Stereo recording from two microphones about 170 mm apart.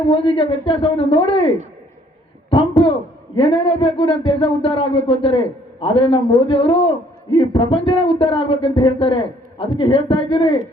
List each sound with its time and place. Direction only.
0.1 s a man's voice: 30° left (ahead or behind)
2.8 s a sound: 30° left (ahead or behind)
3.3 s a man's voice: 30° left (ahead or behind)